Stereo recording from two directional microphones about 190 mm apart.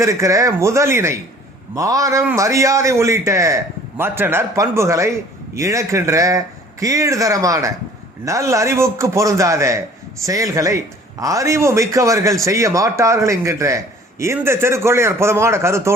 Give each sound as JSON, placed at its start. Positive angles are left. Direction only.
{"t": 0.0, "sound": "a man's voice", "side_deg": -15}